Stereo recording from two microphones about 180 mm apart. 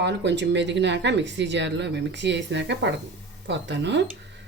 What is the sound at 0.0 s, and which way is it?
Speech, 75° right (ahead or behind).